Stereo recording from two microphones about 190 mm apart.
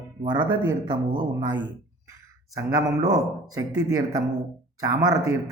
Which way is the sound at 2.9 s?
20° right (ahead or behind).